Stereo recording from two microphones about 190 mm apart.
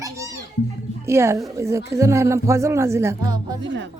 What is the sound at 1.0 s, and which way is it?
Speech, 15° right (ahead or behind).